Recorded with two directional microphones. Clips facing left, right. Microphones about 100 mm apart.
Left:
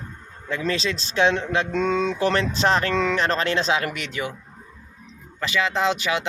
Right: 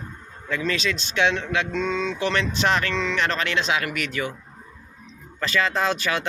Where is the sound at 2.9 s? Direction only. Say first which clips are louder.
Left 4 dB; 45° left (ahead or behind).